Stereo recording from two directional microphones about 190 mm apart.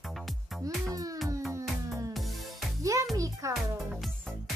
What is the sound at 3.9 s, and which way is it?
Music, centre (ahead or behind).